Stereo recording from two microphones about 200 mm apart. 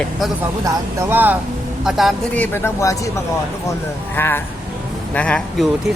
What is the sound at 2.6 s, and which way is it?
Speech, 15° left (ahead or behind).